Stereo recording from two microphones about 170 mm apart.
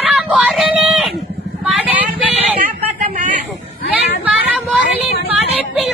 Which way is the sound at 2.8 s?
45° right (ahead or behind).